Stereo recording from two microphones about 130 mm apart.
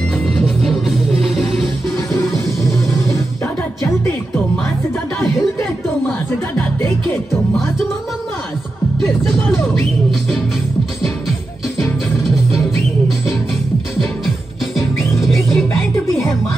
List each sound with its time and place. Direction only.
0.3 s music: centre (ahead or behind)
2.1 s music: 25° left (ahead or behind)
15.1 s music: centre (ahead or behind)